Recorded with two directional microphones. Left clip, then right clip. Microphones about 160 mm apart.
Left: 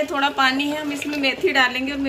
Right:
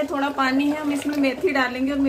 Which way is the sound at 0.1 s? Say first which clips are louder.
Left 3 dB; 15° right (ahead or behind).